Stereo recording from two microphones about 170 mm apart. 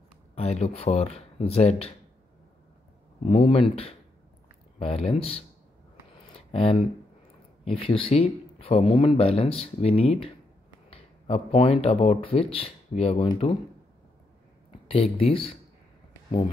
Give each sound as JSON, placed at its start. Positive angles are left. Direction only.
{"t": 0.4, "sound": "speech", "side_deg": 40}
{"t": 3.3, "sound": "speech", "side_deg": 35}
{"t": 6.5, "sound": "speech", "side_deg": 35}
{"t": 14.9, "sound": "speech", "side_deg": 35}